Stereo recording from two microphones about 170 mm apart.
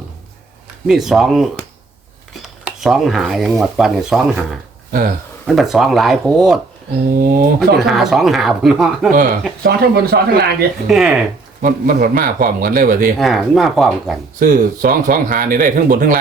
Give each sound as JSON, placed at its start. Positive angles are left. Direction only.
{"t": 0.9, "sound": "speech", "side_deg": 0}
{"t": 4.9, "sound": "speech", "side_deg": -55}
{"t": 5.5, "sound": "speech", "side_deg": 0}
{"t": 7.2, "sound": "speech", "side_deg": -55}
{"t": 7.9, "sound": "speech", "side_deg": 0}
{"t": 9.6, "sound": "speech", "side_deg": -65}
{"t": 10.8, "sound": "speech", "side_deg": 0}
{"t": 11.6, "sound": "speech", "side_deg": -55}
{"t": 13.1, "sound": "speech", "side_deg": 0}
{"t": 14.3, "sound": "speech", "side_deg": -50}